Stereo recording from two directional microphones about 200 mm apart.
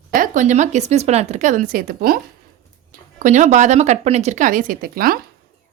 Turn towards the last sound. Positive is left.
turn(degrees=-45)  # may be behind; listen again after turning